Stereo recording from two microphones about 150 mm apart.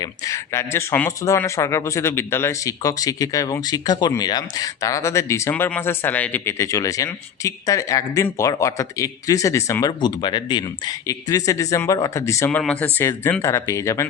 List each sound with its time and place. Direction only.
0.0 s speech: 20° left (ahead or behind)
12.5 s speech: 10° left (ahead or behind)